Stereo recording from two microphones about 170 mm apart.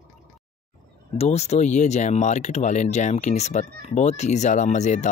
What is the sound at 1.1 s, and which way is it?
Speech, 40° left (ahead or behind).